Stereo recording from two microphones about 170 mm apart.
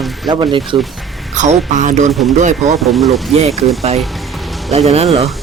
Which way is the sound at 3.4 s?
40° right (ahead or behind).